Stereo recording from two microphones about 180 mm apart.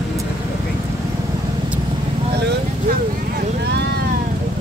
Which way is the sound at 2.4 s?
65° right (ahead or behind).